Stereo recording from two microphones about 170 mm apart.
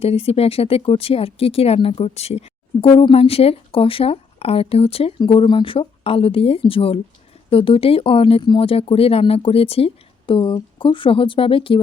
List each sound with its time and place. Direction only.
0.0 s speech: 35° left (ahead or behind)